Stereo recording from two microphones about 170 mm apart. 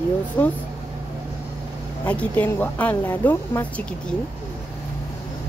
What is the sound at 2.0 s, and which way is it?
Speech, 10° left (ahead or behind).